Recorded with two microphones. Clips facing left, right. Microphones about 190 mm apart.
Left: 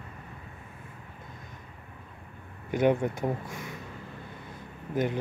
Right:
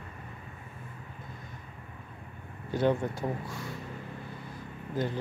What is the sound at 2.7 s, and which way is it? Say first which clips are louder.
Speech: left 3 dB; 20° left (ahead or behind).